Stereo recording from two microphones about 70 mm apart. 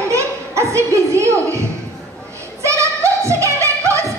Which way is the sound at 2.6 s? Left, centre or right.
Right.